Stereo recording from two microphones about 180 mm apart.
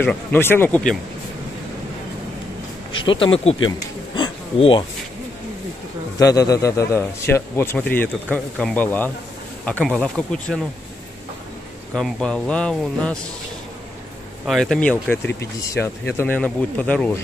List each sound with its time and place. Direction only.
0.0 s a man's voice: 10° left (ahead or behind)
3.0 s speech: 30° left (ahead or behind)
4.1 s a sound: 30° left (ahead or behind)
6.1 s a man's voice: 20° left (ahead or behind)
11.9 s speech: centre (ahead or behind)
14.4 s a man's voice: centre (ahead or behind)